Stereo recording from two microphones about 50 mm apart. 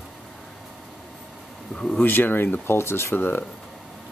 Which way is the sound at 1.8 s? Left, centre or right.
Centre.